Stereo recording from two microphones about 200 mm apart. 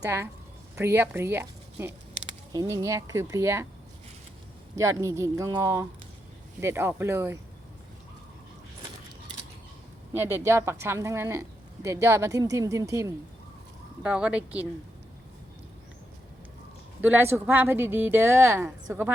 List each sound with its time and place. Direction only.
0.8 s a woman's voice: 10° right (ahead or behind)
4.7 s a woman's voice: 15° right (ahead or behind)
10.2 s a woman's voice: 10° right (ahead or behind)
17.0 s a woman's voice: 10° right (ahead or behind)